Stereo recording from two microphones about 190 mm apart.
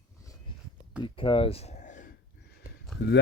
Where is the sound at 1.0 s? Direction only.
30° left (ahead or behind).